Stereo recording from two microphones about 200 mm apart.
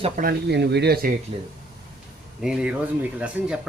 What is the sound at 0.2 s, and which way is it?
Speech, 50° right (ahead or behind).